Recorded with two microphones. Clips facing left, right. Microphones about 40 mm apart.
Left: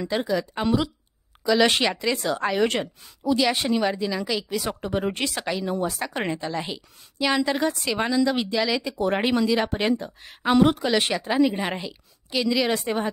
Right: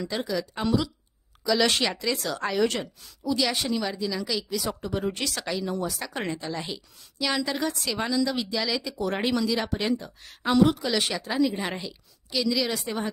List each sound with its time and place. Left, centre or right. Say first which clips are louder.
0.0 s a woman's voice: left 4 dB; centre
4.6 s a woman's voice: left 3 dB; left; by 5.8 s centre
5.8 s a woman's voice: left 4 dB; left
11.5 s a woman's voice: left 3 dB; centre; by 13.0 s left